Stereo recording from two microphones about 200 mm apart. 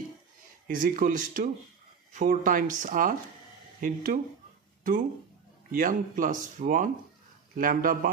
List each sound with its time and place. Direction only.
0.7 s speech: 45° right (ahead or behind)
5.7 s speech: 40° right (ahead or behind)